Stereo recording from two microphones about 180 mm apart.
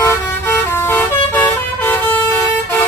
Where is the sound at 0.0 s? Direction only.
15° left (ahead or behind).